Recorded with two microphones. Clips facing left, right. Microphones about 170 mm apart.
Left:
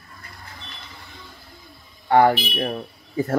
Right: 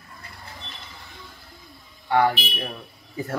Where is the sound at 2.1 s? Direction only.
50° left (ahead or behind).